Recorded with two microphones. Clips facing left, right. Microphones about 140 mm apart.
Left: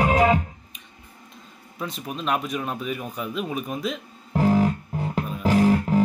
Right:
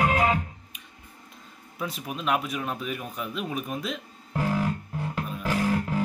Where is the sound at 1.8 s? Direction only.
5° right (ahead or behind).